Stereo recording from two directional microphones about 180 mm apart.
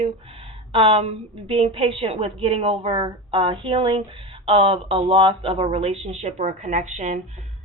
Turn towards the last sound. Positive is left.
turn(degrees=-40)  # may be behind; listen again after turning